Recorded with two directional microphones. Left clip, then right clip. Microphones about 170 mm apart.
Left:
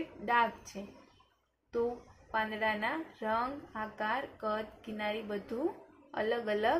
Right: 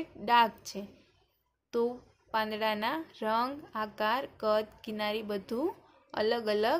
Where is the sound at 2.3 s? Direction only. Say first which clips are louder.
Right 2 dB; 50° right (ahead or behind).